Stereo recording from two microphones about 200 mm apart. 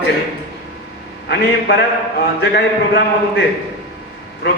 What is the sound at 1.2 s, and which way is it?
A man's voice, 55° left (ahead or behind).